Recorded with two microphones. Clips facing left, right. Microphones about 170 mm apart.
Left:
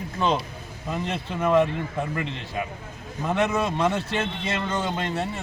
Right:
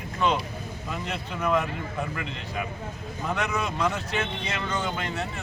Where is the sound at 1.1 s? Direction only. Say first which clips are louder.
Left 3 dB; 30° left (ahead or behind).